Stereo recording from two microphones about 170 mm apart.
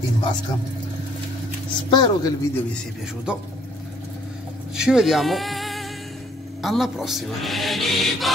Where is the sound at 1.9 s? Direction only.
25° left (ahead or behind).